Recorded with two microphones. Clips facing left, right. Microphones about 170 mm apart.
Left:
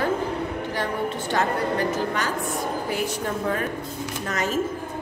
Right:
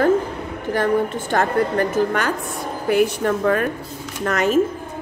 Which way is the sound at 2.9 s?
65° right (ahead or behind).